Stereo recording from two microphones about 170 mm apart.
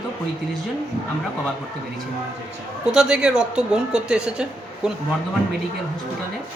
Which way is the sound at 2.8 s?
5° right (ahead or behind).